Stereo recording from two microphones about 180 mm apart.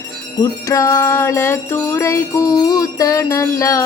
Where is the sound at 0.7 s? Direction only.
15° left (ahead or behind).